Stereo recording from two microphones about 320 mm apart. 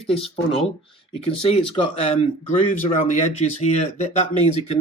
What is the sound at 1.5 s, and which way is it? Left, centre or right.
Speech, centre.